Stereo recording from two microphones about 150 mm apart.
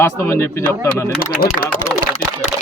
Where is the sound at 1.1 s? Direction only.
85° left.